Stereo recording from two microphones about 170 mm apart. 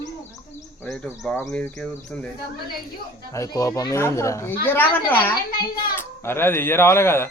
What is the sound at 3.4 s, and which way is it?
Speech, 20° left (ahead or behind).